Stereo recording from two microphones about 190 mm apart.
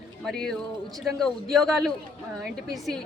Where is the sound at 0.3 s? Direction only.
5° left (ahead or behind).